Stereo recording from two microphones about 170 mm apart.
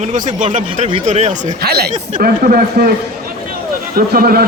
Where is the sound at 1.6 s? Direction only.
70° right (ahead or behind).